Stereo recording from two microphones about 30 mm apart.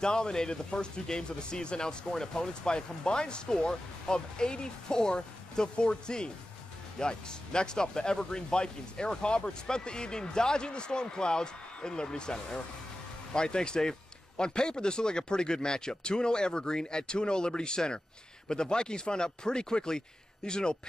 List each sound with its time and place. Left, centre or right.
0.0 s speech: left